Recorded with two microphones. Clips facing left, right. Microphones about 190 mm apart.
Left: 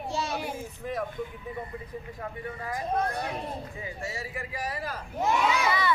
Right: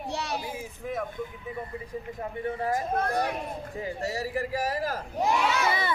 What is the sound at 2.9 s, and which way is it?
Speech, 55° right (ahead or behind).